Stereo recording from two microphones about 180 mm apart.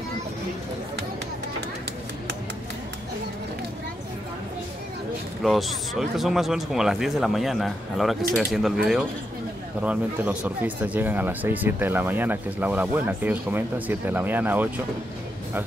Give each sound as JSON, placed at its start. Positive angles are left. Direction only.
{"t": 5.4, "sound": "speech", "side_deg": 0}